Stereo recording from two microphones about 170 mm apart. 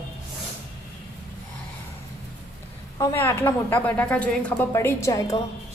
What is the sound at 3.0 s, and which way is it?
A woman's voice, 15° left (ahead or behind).